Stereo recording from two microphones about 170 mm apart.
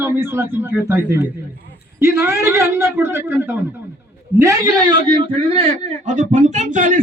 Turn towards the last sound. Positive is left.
turn(degrees=-50)  # may be behind; listen again after turning